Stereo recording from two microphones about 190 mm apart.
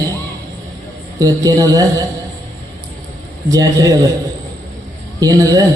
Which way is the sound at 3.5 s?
20° right (ahead or behind).